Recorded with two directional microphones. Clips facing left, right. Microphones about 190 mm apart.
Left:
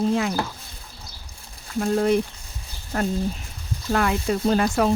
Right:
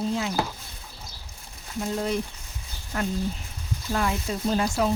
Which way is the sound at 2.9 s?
40° left (ahead or behind).